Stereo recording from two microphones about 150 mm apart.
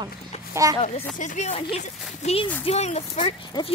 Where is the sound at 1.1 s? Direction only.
55° left (ahead or behind).